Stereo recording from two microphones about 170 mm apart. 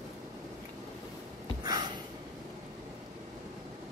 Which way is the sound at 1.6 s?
25° right (ahead or behind).